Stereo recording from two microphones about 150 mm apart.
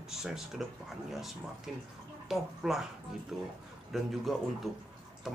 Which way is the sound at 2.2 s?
Centre (ahead or behind).